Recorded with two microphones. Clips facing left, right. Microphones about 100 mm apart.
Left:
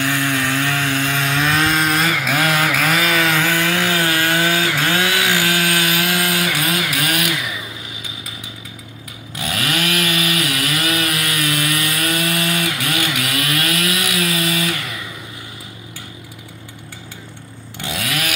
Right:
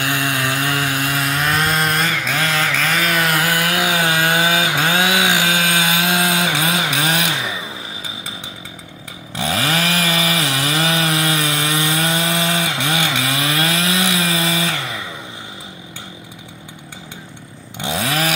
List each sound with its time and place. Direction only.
0.0 s chainsaw: 15° right (ahead or behind)
9.3 s chainsaw: 30° right (ahead or behind)
17.7 s chainsaw: 25° right (ahead or behind)